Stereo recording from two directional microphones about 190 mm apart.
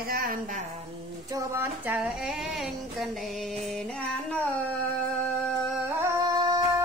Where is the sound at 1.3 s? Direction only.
15° right (ahead or behind); by 3.5 s centre (ahead or behind).